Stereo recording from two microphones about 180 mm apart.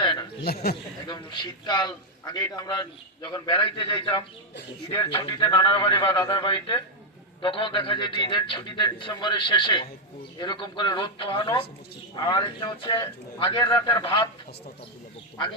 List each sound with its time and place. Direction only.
0.0 s a sound: 25° left (ahead or behind)
0.4 s speech: 60° left (ahead or behind)
1.0 s a man's voice: 25° left (ahead or behind)